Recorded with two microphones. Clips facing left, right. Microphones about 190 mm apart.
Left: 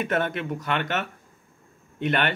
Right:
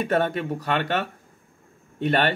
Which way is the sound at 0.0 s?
35° right (ahead or behind).